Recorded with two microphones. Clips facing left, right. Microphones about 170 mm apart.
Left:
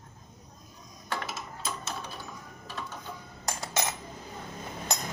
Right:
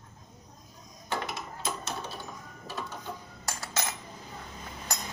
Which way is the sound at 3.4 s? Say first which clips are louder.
Left 4 dB; 20° left (ahead or behind).